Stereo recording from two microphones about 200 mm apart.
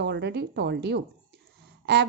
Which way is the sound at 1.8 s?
55° right (ahead or behind).